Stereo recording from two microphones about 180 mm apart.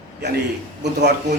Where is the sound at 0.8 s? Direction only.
70° right (ahead or behind).